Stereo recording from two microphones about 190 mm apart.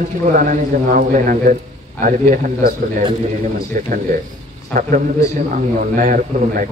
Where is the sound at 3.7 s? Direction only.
45° right (ahead or behind).